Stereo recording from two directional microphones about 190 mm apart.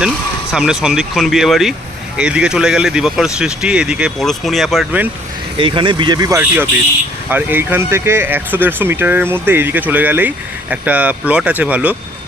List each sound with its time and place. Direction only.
0.5 s speech: 5° right (ahead or behind)
5.5 s speech: 25° right (ahead or behind); by 11.9 s 5° right (ahead or behind)